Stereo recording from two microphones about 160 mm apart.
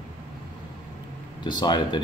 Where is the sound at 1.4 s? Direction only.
30° left (ahead or behind).